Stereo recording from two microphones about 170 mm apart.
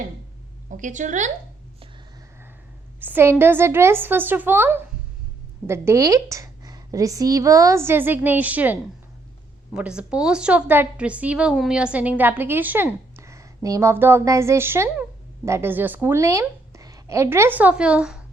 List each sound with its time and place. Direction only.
0.7 s a woman's voice: 50° right (ahead or behind)
3.0 s a woman's voice: 10° right (ahead or behind)